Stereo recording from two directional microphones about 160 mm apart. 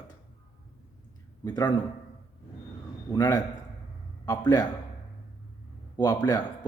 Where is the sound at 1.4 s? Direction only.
25° left (ahead or behind).